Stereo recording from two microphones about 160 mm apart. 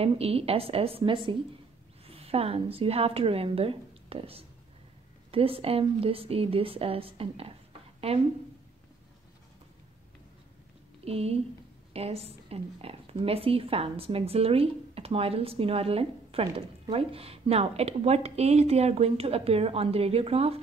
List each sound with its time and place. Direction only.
0.0 s a woman's voice: 40° right (ahead or behind)
11.1 s speech: 40° right (ahead or behind)